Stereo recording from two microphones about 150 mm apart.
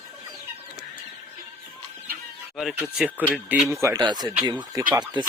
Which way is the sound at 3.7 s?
20° right (ahead or behind).